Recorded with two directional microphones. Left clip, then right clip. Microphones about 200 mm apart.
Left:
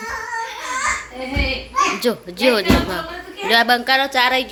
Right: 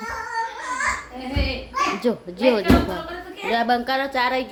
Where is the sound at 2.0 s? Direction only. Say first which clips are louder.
Left 3 dB; 10° right (ahead or behind).